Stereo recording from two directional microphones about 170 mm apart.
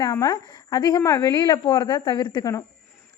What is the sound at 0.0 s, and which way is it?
A woman's voice, 20° left (ahead or behind).